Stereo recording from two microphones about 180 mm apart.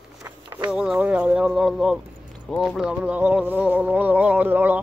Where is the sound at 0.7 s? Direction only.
5° right (ahead or behind).